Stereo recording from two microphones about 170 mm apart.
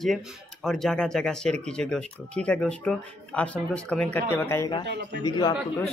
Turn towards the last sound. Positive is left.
turn(degrees=25)  # may be behind; listen again after turning